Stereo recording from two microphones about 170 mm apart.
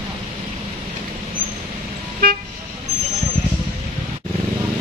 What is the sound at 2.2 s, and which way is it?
Toot, 60° right (ahead or behind).